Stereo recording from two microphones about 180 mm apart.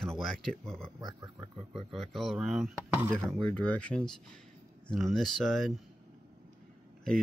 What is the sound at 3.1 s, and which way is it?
Speech, 5° left (ahead or behind).